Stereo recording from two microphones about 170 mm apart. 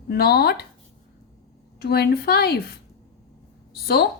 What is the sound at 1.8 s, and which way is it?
A woman's voice, 70° left (ahead or behind).